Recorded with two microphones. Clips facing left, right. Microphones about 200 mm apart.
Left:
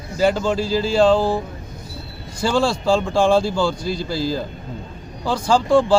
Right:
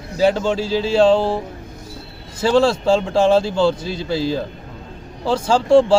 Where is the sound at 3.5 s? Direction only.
25° right (ahead or behind).